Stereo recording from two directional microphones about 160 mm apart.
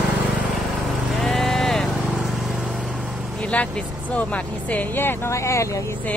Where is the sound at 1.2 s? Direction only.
Centre (ahead or behind).